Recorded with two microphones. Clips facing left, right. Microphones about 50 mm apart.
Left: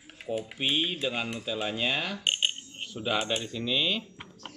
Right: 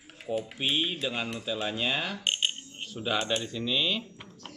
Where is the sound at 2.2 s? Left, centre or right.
Centre.